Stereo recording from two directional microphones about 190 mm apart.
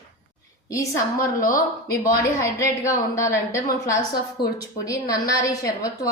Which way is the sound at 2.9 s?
15° left (ahead or behind).